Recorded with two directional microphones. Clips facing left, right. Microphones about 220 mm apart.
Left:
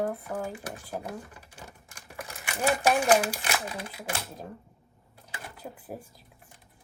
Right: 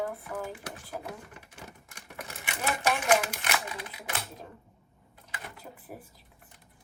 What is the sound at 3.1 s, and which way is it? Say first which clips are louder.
Speech: left 1 dB; 30° left (ahead or behind).